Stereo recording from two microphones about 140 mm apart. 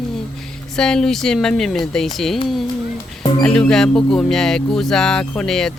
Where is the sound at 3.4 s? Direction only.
5° left (ahead or behind).